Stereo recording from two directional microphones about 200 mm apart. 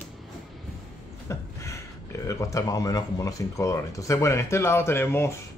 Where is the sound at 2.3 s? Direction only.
15° left (ahead or behind).